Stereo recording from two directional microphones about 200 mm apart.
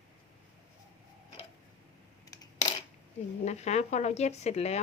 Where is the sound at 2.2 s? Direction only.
15° left (ahead or behind).